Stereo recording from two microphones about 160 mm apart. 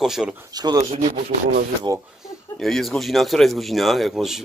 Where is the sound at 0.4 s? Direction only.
25° right (ahead or behind).